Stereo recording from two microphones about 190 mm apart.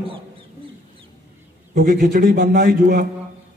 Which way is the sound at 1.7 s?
45° right (ahead or behind).